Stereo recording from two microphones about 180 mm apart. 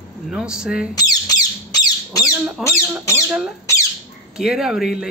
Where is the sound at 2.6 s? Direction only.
Centre (ahead or behind).